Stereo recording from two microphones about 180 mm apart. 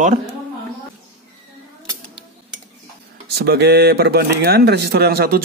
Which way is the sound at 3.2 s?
65° right (ahead or behind).